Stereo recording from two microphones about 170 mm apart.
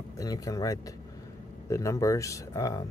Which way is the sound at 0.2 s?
20° left (ahead or behind).